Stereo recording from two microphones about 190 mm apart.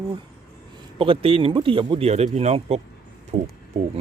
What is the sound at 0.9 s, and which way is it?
Speech, 25° right (ahead or behind).